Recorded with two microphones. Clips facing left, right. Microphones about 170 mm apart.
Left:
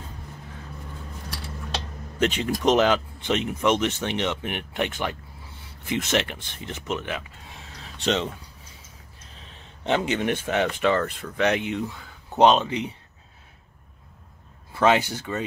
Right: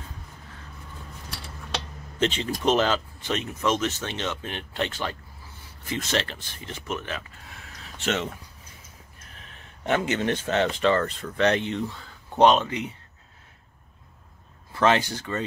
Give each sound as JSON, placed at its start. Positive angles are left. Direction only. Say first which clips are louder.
{"t": 2.1, "sound": "speech", "louder": "left 2 dB", "side_deg": 10}
{"t": 9.8, "sound": "speech", "louder": "left 1 dB", "side_deg": 15}
{"t": 14.7, "sound": "speech", "louder": "left 1 dB", "side_deg": 10}